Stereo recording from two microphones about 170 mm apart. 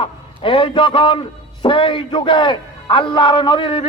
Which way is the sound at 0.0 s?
30° left (ahead or behind).